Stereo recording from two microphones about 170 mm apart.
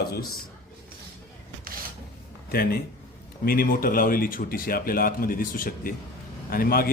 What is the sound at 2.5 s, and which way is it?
Speech, 60° left (ahead or behind).